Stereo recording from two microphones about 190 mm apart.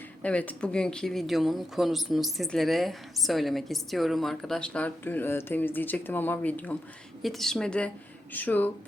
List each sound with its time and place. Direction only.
0.2 s speech: 5° left (ahead or behind)